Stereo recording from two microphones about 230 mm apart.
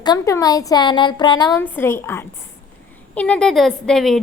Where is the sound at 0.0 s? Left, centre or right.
Centre.